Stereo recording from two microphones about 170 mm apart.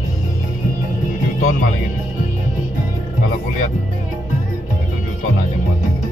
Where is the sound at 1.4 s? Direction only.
55° left (ahead or behind).